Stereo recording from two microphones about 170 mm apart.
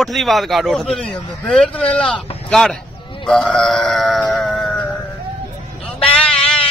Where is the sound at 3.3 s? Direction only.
5° left (ahead or behind).